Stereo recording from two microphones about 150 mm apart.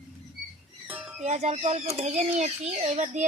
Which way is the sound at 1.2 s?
50° right (ahead or behind).